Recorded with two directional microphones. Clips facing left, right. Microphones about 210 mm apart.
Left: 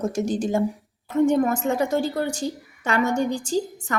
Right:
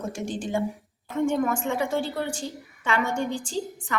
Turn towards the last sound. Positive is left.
turn(degrees=45)  # may be behind; listen again after turning